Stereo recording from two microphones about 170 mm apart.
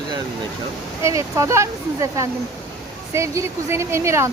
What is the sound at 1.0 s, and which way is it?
Speech, 15° right (ahead or behind).